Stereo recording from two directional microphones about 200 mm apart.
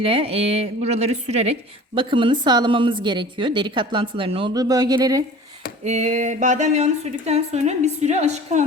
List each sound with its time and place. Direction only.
0.0 s a woman's voice: 30° right (ahead or behind)
5.8 s speech: 35° right (ahead or behind)